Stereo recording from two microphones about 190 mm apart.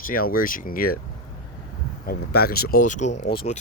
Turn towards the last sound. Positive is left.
turn(degrees=30)  # may be behind; listen again after turning